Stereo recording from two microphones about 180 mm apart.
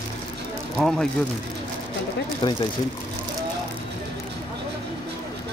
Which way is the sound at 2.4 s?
25° left (ahead or behind).